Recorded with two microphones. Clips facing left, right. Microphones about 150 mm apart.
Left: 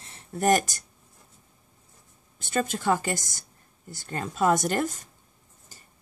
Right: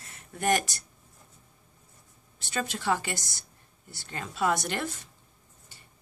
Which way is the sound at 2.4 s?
45° left (ahead or behind).